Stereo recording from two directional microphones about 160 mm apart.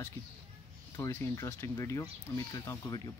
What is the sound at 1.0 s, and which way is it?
Speech, 15° left (ahead or behind).